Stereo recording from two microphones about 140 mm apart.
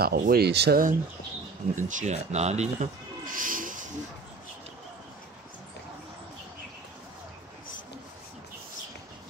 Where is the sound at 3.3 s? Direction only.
75° right (ahead or behind).